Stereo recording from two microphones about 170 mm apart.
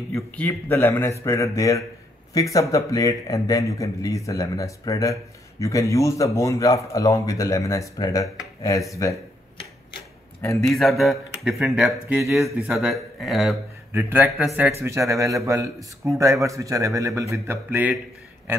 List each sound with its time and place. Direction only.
0.1 s speech: 10° left (ahead or behind)
10.6 s speech: centre (ahead or behind)
12.2 s a man's voice: 15° right (ahead or behind)
12.4 s speech: 5° right (ahead or behind)
13.9 s a man's voice: 10° right (ahead or behind)